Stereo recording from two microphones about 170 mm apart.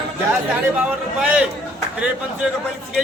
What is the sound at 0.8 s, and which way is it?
Speech, 5° right (ahead or behind).